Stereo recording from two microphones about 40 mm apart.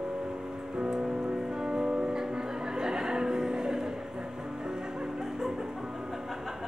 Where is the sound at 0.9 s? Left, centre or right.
Right.